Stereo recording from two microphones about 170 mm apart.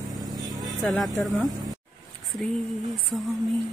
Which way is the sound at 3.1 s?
5° left (ahead or behind).